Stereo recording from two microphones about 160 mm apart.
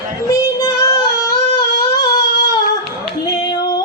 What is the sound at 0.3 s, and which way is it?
Child singing, 20° left (ahead or behind).